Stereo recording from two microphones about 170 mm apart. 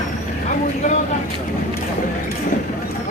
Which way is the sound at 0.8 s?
45° left (ahead or behind).